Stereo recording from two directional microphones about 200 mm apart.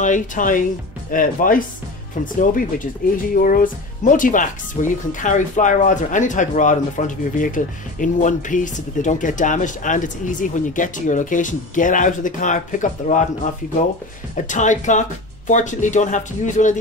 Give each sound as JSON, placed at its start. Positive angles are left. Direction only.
{"t": 0.0, "sound": "speech", "side_deg": 40}
{"t": 14.3, "sound": "speech", "side_deg": 40}